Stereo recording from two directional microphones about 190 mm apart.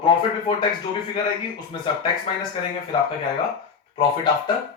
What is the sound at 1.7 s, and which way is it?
Speech, 25° left (ahead or behind).